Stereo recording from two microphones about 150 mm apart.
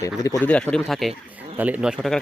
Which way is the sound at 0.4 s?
10° left (ahead or behind).